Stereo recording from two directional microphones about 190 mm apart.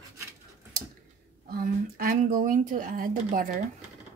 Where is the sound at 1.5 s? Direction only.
50° right (ahead or behind).